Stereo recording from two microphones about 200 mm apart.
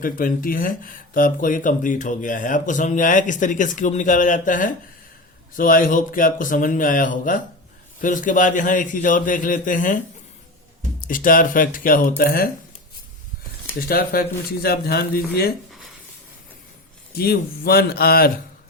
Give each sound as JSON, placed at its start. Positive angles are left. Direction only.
{"t": 0.0, "sound": "speech", "side_deg": 45}
{"t": 11.0, "sound": "speech", "side_deg": 45}
{"t": 13.7, "sound": "speech", "side_deg": 50}
{"t": 17.2, "sound": "speech", "side_deg": 50}